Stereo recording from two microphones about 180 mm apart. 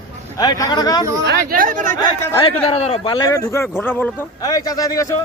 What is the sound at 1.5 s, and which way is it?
Speech, 50° right (ahead or behind).